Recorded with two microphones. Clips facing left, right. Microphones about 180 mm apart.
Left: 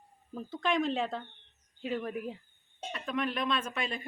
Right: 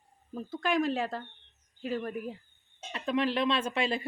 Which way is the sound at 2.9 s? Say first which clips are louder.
Right 5 dB; 30° right (ahead or behind).